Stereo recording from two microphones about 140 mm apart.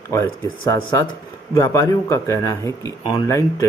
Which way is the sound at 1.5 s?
20° left (ahead or behind).